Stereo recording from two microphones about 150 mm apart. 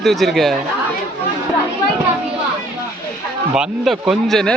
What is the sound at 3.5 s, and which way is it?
A man's voice, 5° right (ahead or behind).